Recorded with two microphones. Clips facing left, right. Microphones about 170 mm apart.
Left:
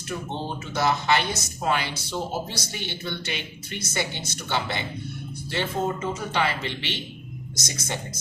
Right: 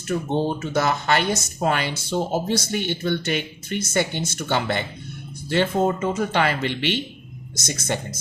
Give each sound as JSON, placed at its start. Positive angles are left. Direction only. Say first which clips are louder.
{"t": 0.1, "sound": "speech", "louder": "right 8 dB", "side_deg": -50}